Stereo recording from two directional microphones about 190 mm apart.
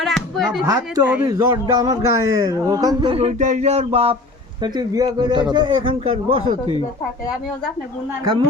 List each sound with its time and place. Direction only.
0.0 s speech: centre (ahead or behind)
0.6 s a man's voice: 15° right (ahead or behind); by 4.2 s 30° right (ahead or behind)
4.6 s a man's voice: 20° right (ahead or behind)